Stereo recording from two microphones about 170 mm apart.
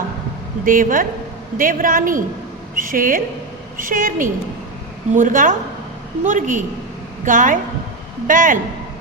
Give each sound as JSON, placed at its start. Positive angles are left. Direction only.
{"t": 0.6, "sound": "a man's voice", "side_deg": -55}